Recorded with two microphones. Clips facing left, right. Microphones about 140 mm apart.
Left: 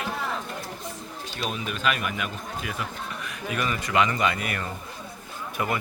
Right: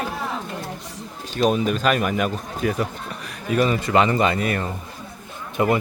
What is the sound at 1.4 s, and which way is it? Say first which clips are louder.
Speech: right 9 dB; 40° right (ahead or behind).